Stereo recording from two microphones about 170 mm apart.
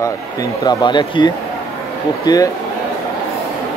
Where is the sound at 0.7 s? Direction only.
25° left (ahead or behind).